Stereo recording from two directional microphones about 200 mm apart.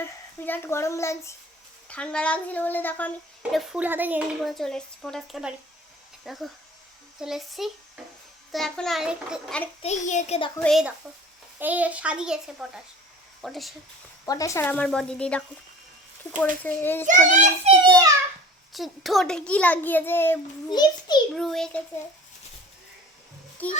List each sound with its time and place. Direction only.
0.0 s a child's voice: 10° left (ahead or behind)
3.5 s speech: centre (ahead or behind)
9.8 s a child's voice: 35° left (ahead or behind)
10.6 s speech: centre (ahead or behind)
14.3 s a child's voice: 15° left (ahead or behind)
17.1 s a child's voice: 35° right (ahead or behind)
18.7 s a child's voice: centre (ahead or behind); by 21.2 s 20° left (ahead or behind)
21.3 s speech: centre (ahead or behind)
23.6 s a child's voice: 10° left (ahead or behind)